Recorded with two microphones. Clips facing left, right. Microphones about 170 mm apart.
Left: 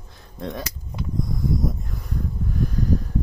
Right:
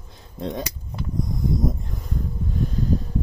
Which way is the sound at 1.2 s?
20° right (ahead or behind).